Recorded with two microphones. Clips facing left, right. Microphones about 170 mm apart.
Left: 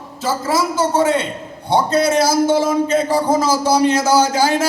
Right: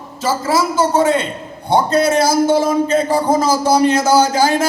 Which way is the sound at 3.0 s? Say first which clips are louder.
Right 1 dB; 50° right (ahead or behind).